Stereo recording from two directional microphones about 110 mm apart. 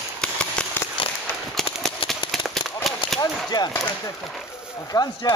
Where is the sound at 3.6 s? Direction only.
40° left (ahead or behind).